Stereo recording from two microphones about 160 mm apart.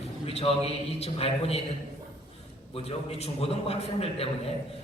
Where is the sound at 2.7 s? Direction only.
40° left (ahead or behind).